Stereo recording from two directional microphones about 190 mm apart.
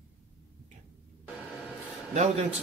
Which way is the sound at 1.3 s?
5° right (ahead or behind).